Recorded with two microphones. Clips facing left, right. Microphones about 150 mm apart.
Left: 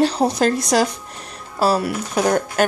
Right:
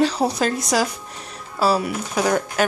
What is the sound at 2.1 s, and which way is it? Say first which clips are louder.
Speech: left 2 dB; 45° left (ahead or behind).